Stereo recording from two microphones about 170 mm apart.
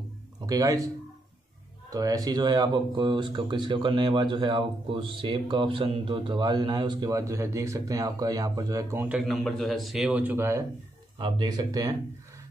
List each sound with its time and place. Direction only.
0.5 s speech: 20° right (ahead or behind)
1.9 s speech: 20° right (ahead or behind)
9.2 s a man's voice: centre (ahead or behind); by 10.6 s 15° right (ahead or behind)
11.1 s speech: 30° right (ahead or behind)